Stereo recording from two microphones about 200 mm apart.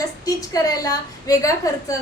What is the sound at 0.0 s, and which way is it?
A woman's voice, 20° left (ahead or behind).